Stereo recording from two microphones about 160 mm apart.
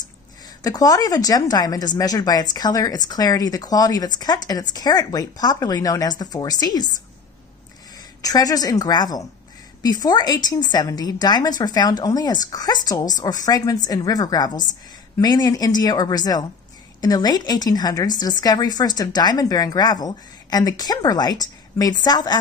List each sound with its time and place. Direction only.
0.6 s a woman's voice: 25° left (ahead or behind)
8.2 s a woman's voice: 20° left (ahead or behind)